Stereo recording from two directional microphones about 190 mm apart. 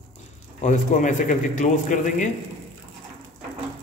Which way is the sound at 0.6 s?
40° left (ahead or behind).